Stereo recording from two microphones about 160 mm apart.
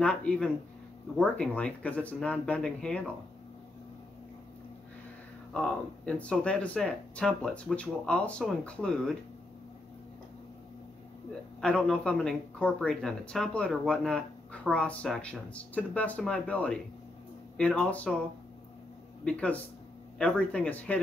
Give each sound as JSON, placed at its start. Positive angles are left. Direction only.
{"t": 0.0, "sound": "speech", "side_deg": 5}
{"t": 5.5, "sound": "speech", "side_deg": 5}
{"t": 11.6, "sound": "speech", "side_deg": 5}
{"t": 19.2, "sound": "speech", "side_deg": 10}